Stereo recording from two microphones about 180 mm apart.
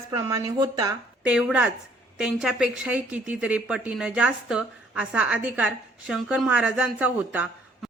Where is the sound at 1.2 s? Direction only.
5° right (ahead or behind).